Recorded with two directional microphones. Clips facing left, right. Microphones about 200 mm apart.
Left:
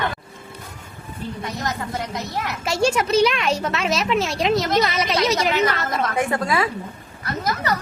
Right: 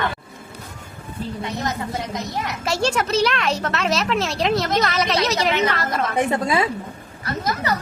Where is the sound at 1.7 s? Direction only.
15° right (ahead or behind).